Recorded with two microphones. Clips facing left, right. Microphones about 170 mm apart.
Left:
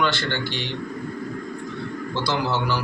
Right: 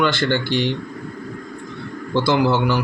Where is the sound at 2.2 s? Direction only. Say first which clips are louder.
Right 7 dB; 50° right (ahead or behind).